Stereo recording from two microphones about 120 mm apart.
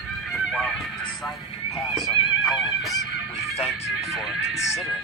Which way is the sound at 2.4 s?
35° left (ahead or behind).